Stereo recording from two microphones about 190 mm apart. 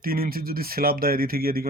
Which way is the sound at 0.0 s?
50° right (ahead or behind).